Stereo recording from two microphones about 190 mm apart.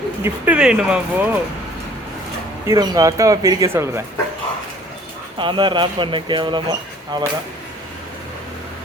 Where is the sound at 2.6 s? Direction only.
20° right (ahead or behind).